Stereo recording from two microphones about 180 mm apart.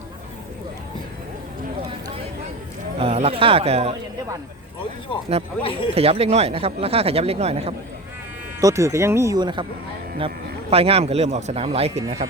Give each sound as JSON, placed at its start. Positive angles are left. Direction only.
{"t": 3.0, "sound": "speech", "side_deg": -35}
{"t": 5.6, "sound": "speech", "side_deg": 30}
{"t": 5.9, "sound": "speech", "side_deg": -35}
{"t": 8.6, "sound": "speech", "side_deg": -15}